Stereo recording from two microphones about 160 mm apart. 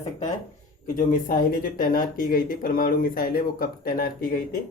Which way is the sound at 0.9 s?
55° left (ahead or behind).